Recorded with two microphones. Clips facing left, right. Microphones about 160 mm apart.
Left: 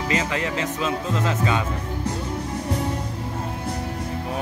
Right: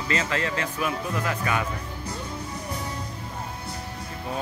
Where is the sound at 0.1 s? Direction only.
20° left (ahead or behind).